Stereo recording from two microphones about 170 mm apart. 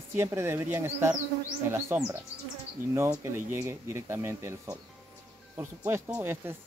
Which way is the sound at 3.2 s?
15° right (ahead or behind).